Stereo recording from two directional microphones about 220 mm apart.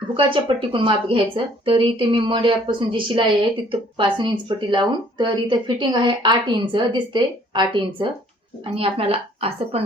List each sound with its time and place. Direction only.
0.2 s a woman's voice: 25° right (ahead or behind)